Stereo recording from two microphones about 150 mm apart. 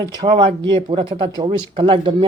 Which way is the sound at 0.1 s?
30° right (ahead or behind).